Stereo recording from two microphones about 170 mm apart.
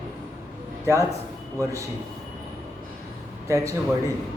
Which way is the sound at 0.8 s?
15° right (ahead or behind).